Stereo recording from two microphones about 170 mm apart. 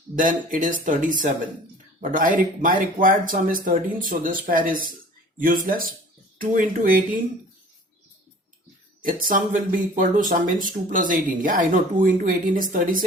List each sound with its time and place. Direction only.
0.2 s speech: 50° right (ahead or behind)
9.0 s speech: 55° right (ahead or behind)